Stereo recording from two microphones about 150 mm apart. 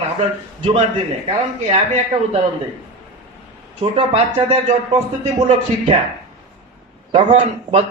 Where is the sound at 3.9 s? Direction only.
40° right (ahead or behind).